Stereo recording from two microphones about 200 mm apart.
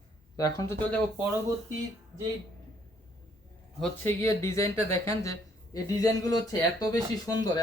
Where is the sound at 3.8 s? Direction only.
10° left (ahead or behind).